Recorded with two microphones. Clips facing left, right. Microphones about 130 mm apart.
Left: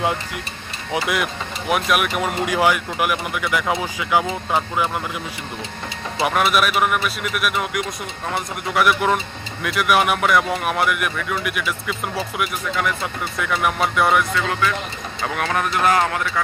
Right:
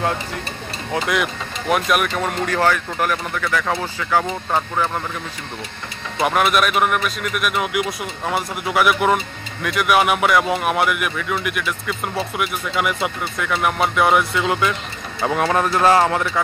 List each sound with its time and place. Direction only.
0.9 s speech: 5° left (ahead or behind)
6.2 s speech: centre (ahead or behind)
15.2 s speech: 25° right (ahead or behind)